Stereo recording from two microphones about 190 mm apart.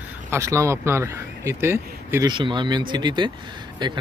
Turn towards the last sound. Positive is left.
turn(degrees=-25)  # may be behind; listen again after turning